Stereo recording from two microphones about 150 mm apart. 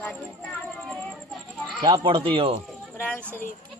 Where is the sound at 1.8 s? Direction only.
30° right (ahead or behind).